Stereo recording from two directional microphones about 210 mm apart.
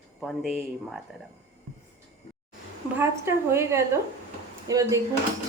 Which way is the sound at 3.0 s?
10° right (ahead or behind).